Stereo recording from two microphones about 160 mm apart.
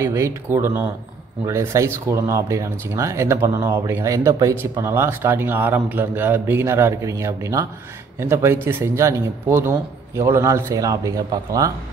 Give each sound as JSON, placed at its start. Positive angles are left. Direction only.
{"t": 0.0, "sound": "speech", "side_deg": -15}